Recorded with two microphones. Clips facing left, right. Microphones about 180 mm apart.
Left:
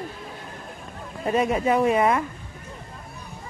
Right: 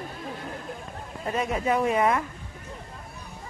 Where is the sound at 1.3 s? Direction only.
15° left (ahead or behind).